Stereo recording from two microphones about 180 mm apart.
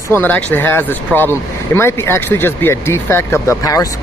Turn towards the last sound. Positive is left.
turn(degrees=20)  # may be behind; listen again after turning